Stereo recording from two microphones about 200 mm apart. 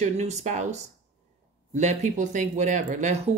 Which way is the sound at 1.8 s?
35° right (ahead or behind).